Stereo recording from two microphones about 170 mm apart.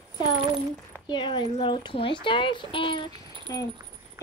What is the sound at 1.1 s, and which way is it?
A child's voice, 25° left (ahead or behind).